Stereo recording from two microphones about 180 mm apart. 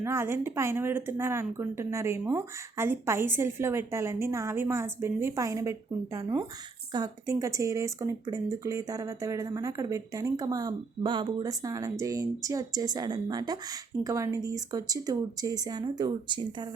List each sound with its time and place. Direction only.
0.0 s a woman's voice: 15° right (ahead or behind)
6.9 s speech: 20° right (ahead or behind)